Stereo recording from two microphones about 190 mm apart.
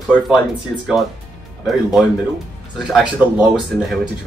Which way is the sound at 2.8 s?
5° right (ahead or behind).